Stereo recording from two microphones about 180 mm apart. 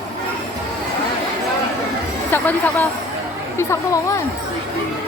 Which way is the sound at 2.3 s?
10° left (ahead or behind).